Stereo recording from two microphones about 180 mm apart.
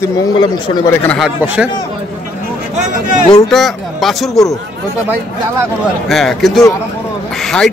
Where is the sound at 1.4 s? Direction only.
10° right (ahead or behind).